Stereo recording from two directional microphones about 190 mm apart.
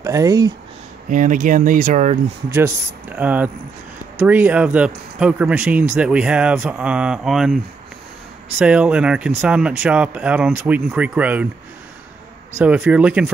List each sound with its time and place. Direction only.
0.0 s speech: 15° right (ahead or behind)
1.1 s speech: 45° right (ahead or behind)
2.5 s speech: 10° right (ahead or behind)
12.5 s speech: 10° right (ahead or behind)